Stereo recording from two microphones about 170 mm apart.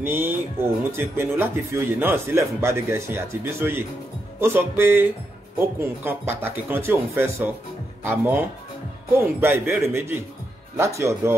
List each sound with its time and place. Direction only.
0.0 s speech: 10° right (ahead or behind)